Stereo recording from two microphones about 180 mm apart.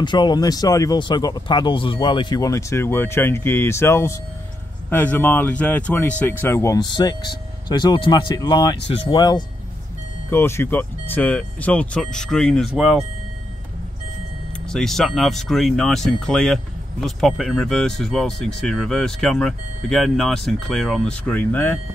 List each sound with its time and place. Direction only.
0.0 s speech: 25° left (ahead or behind); by 13.0 s centre (ahead or behind)
14.7 s speech: centre (ahead or behind)